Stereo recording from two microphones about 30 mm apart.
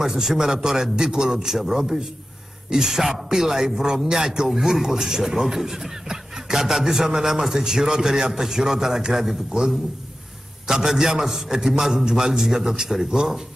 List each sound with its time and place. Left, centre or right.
0.0 s a man's voice: centre
1.5 s a man's voice: centre
6.0 s a sound: centre
7.2 s a man's voice: centre
10.7 s a man's voice: centre
11.2 s a man's voice: centre
11.5 s a man's voice: right